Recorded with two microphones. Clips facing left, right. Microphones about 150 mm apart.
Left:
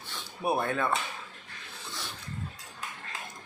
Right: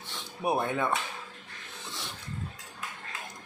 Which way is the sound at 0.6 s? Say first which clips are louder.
Even; 15° right (ahead or behind).